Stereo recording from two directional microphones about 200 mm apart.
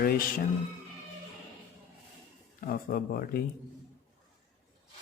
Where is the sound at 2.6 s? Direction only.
45° left (ahead or behind).